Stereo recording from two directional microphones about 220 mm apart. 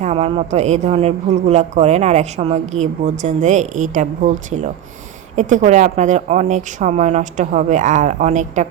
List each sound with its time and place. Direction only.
0.0 s a woman's voice: 30° right (ahead or behind)